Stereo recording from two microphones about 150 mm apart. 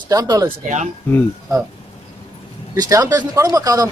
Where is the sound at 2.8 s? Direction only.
25° right (ahead or behind).